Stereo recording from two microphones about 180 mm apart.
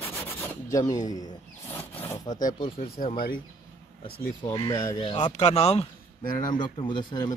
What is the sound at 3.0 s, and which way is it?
Speech, 45° left (ahead or behind).